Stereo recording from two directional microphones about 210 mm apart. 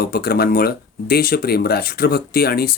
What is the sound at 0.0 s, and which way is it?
Speech, 45° left (ahead or behind).